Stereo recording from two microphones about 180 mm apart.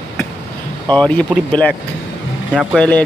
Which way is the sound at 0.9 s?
5° left (ahead or behind).